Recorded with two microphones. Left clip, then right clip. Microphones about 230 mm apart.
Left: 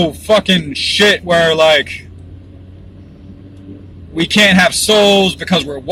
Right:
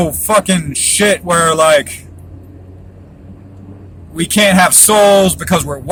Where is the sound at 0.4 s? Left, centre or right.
Right.